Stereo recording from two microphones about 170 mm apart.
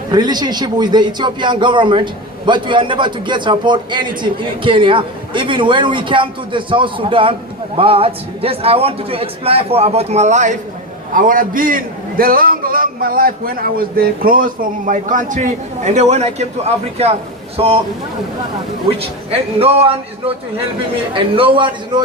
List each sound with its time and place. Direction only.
0.1 s a man's voice: 25° right (ahead or behind)
18.9 s a man's voice: 35° right (ahead or behind)